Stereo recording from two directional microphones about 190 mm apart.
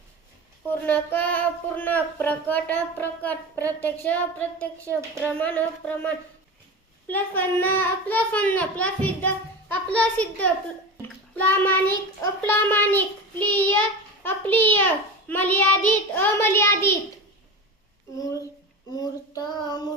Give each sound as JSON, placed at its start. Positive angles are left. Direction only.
{"t": 0.7, "sound": "speech", "side_deg": 10}
{"t": 18.9, "sound": "child singing", "side_deg": 20}